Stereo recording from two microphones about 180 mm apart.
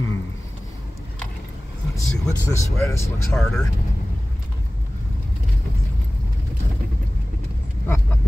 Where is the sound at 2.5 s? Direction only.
15° left (ahead or behind).